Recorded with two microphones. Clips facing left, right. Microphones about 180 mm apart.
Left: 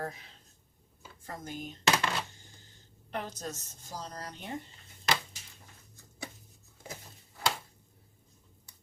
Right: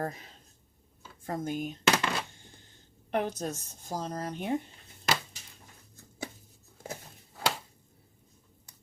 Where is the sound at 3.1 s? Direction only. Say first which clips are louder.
Right 7 dB; 60° right (ahead or behind).